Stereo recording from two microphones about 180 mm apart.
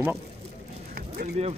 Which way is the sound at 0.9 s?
60° right (ahead or behind).